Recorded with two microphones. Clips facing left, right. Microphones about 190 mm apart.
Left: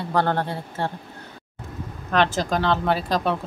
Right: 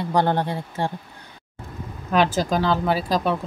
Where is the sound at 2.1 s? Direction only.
5° right (ahead or behind).